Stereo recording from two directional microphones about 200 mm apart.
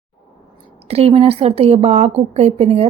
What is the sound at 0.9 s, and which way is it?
Speech, 30° right (ahead or behind).